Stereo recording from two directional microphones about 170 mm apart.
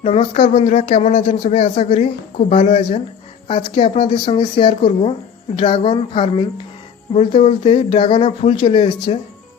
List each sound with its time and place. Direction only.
0.0 s speech: 35° left (ahead or behind)
2.5 s speech: 50° left (ahead or behind)
2.7 s speech: 30° left (ahead or behind)